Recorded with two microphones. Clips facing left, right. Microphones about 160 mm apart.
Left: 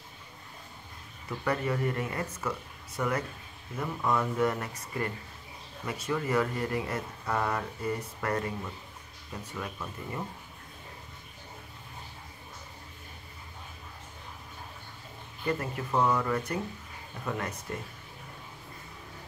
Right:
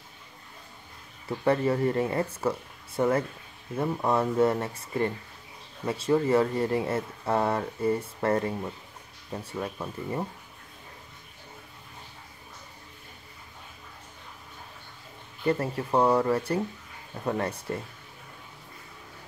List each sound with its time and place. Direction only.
1.4 s speech: 30° right (ahead or behind)
15.4 s speech: 30° right (ahead or behind)